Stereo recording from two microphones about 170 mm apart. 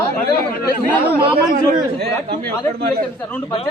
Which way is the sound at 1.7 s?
60° right (ahead or behind).